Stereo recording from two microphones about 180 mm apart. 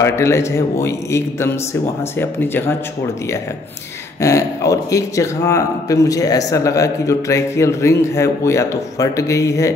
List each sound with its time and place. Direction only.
0.0 s speech: 15° left (ahead or behind)
4.2 s speech: 15° left (ahead or behind)